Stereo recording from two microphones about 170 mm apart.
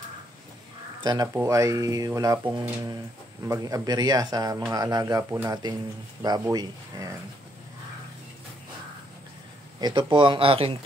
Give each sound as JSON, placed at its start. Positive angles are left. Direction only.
{"t": 1.0, "sound": "speech", "side_deg": -25}
{"t": 9.8, "sound": "speech", "side_deg": -25}